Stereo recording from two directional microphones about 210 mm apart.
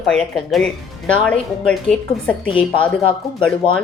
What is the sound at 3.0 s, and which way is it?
Speech, 25° left (ahead or behind).